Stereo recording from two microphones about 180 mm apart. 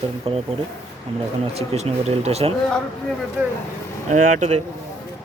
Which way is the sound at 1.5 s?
35° right (ahead or behind).